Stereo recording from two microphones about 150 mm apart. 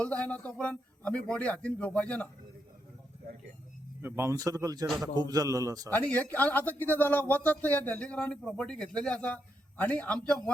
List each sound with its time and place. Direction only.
0.0 s speech: 10° left (ahead or behind)
4.0 s a man's voice: 20° right (ahead or behind)
5.9 s speech: 10° left (ahead or behind)